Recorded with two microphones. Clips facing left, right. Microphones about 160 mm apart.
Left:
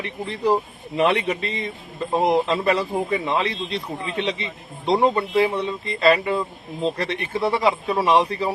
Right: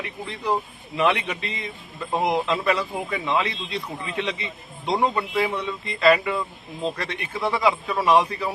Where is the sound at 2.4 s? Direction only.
35° left (ahead or behind).